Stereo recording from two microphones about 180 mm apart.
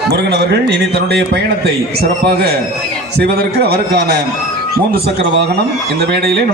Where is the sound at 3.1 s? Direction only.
60° right (ahead or behind).